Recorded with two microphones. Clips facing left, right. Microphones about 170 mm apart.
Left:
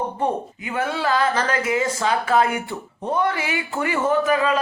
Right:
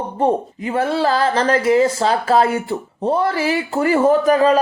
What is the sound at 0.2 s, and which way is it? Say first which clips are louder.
Speech: right 6 dB; 30° right (ahead or behind).